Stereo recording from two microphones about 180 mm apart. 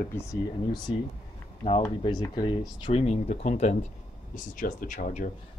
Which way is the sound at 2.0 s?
25° left (ahead or behind).